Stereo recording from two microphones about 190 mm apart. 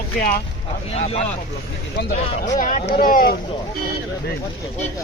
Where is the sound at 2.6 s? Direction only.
45° left (ahead or behind).